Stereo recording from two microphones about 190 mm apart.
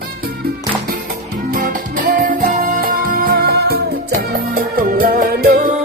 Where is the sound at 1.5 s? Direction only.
45° right (ahead or behind).